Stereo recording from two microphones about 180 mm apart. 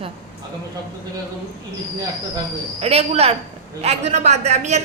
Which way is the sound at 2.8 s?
35° right (ahead or behind).